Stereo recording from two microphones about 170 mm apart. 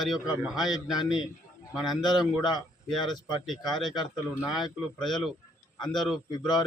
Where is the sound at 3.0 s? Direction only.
25° left (ahead or behind).